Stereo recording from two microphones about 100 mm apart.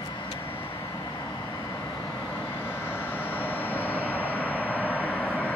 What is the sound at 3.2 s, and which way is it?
Vehicle, 20° left (ahead or behind).